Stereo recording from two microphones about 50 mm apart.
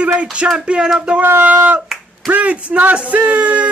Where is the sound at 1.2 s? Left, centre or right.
Right.